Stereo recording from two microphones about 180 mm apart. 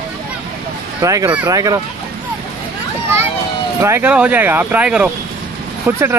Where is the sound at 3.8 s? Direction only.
10° right (ahead or behind).